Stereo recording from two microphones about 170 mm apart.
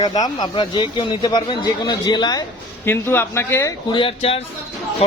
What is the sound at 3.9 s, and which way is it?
Speech, 35° left (ahead or behind).